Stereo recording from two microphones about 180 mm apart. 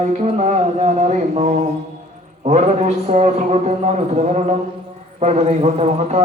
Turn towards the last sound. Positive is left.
turn(degrees=-40)  # may be behind; listen again after turning